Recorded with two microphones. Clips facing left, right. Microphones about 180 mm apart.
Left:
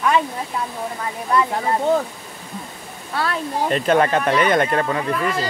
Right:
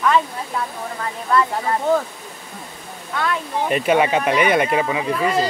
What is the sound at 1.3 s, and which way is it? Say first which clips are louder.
Speech: even; 15° left (ahead or behind).